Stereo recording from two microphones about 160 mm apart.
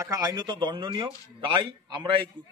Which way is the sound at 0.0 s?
20° right (ahead or behind).